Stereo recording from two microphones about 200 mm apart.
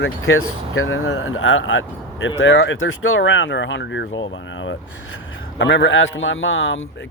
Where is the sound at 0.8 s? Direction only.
85° left.